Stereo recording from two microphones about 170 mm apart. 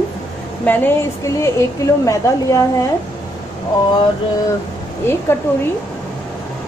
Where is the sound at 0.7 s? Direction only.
15° left (ahead or behind).